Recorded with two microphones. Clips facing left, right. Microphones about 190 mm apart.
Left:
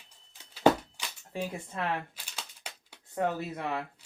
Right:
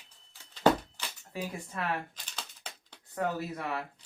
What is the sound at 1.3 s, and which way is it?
Speech, 25° left (ahead or behind).